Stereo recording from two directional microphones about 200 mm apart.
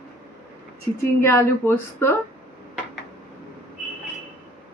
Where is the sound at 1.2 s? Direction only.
10° left (ahead or behind).